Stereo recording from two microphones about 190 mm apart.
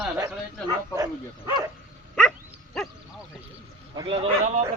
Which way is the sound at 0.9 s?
20° right (ahead or behind).